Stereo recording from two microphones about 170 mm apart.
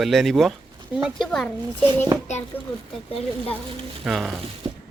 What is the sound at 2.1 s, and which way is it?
Speech, 25° right (ahead or behind).